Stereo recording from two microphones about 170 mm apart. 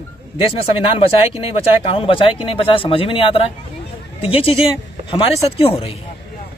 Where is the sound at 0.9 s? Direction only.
30° left (ahead or behind).